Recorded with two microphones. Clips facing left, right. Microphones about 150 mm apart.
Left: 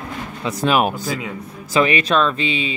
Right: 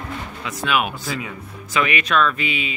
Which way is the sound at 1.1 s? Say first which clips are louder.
Left 2 dB; 30° left (ahead or behind).